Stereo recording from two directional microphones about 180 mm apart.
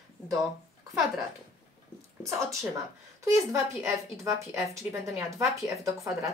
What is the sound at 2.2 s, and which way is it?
Speech, 15° right (ahead or behind).